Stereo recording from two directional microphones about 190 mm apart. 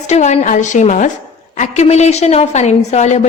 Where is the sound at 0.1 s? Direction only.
35° left (ahead or behind).